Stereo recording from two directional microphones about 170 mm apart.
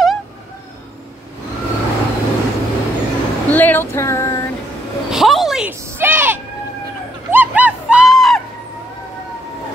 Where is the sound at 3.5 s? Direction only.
10° left (ahead or behind).